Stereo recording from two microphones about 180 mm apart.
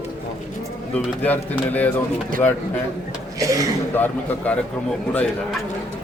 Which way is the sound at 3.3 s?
20° right (ahead or behind).